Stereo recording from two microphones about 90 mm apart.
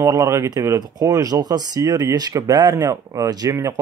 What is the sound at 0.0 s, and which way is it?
Speech, 35° right (ahead or behind).